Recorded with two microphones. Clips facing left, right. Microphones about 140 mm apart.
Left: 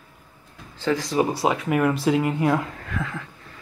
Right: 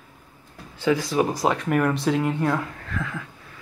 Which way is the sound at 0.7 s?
10° right (ahead or behind).